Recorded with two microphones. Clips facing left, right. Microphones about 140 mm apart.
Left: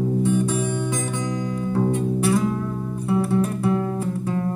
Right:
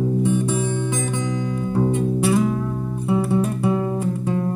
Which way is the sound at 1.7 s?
10° right (ahead or behind).